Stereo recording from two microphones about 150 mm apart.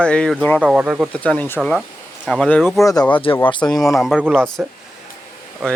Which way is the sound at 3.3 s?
35° left (ahead or behind).